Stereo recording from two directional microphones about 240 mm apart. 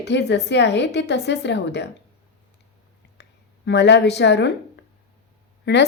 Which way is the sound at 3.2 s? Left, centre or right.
Left.